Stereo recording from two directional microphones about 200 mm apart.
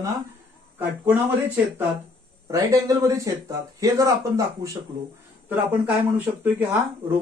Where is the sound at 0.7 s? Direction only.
10° right (ahead or behind).